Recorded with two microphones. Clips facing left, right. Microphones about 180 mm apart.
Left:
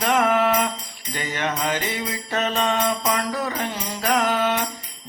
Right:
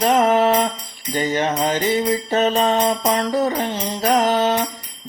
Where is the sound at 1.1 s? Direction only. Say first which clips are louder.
Right 7 dB; 30° right (ahead or behind).